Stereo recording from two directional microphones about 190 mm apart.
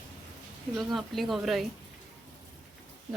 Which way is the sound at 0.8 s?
Centre (ahead or behind).